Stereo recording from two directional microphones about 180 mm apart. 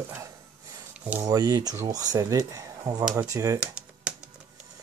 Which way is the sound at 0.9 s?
10° right (ahead or behind).